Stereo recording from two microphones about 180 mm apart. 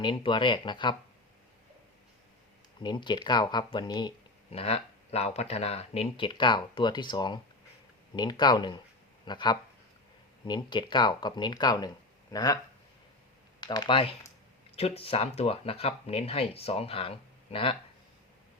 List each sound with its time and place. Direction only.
0.0 s speech: 25° left (ahead or behind)
2.8 s speech: 25° left (ahead or behind)
4.5 s speech: 35° left (ahead or behind)
13.6 s speech: 25° left (ahead or behind)